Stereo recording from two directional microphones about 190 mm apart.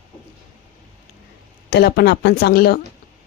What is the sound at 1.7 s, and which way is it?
Speech, 60° left (ahead or behind).